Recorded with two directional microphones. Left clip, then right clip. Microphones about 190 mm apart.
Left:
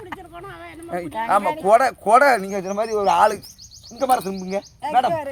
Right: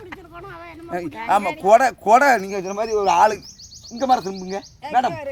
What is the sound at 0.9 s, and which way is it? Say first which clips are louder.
A man's voice: even; 10° right (ahead or behind).